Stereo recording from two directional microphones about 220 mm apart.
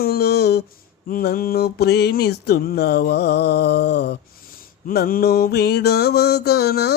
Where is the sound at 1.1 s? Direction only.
45° left (ahead or behind).